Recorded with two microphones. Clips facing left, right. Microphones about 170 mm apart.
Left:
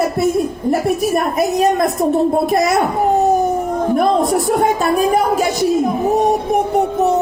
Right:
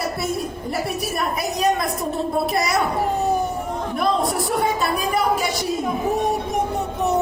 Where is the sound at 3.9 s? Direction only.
45° left (ahead or behind).